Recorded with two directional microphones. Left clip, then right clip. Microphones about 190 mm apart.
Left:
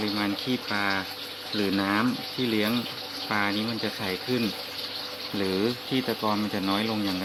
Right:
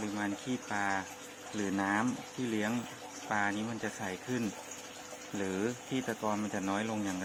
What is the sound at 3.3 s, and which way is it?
Speech, centre (ahead or behind).